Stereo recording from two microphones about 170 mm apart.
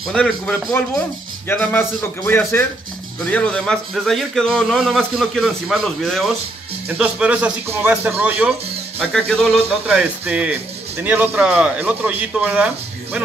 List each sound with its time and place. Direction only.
0.1 s a man's voice: 5° left (ahead or behind)
9.8 s speech: 5° right (ahead or behind)